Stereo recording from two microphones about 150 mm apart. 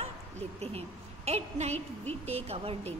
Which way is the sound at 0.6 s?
45° right (ahead or behind).